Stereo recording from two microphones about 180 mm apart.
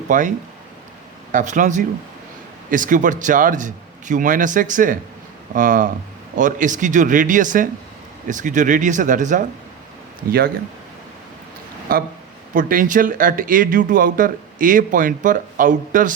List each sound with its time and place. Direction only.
0.1 s speech: 45° right (ahead or behind)
11.9 s speech: 55° right (ahead or behind)